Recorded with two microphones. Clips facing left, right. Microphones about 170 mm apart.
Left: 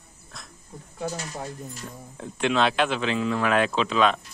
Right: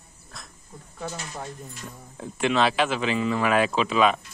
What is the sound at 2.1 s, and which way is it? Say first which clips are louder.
A man's voice: even; centre (ahead or behind).